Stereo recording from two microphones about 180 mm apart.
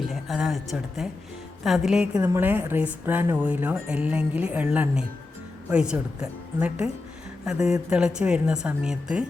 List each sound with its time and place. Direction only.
0.1 s a woman's voice: centre (ahead or behind)
2.1 s a woman's voice: 15° right (ahead or behind)